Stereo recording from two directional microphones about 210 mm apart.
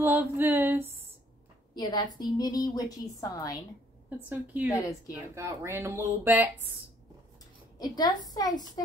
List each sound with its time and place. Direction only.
0.0 s speech: 10° right (ahead or behind)
1.8 s a woman's voice: 20° left (ahead or behind)
4.6 s a woman's voice: 15° left (ahead or behind)
5.3 s speech: 10° right (ahead or behind)
7.8 s a woman's voice: 20° left (ahead or behind)